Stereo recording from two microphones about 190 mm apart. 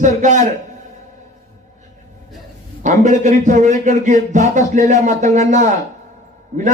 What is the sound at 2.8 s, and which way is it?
A man's voice, 40° right (ahead or behind).